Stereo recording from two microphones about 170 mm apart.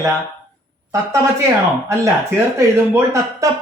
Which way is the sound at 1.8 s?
15° right (ahead or behind).